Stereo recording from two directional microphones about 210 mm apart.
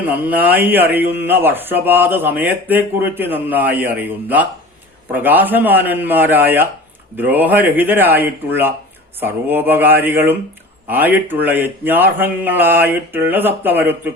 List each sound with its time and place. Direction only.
0.0 s speech: 10° right (ahead or behind)